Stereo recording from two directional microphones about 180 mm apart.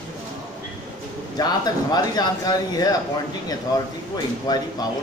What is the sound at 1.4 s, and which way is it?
Speech, 20° left (ahead or behind).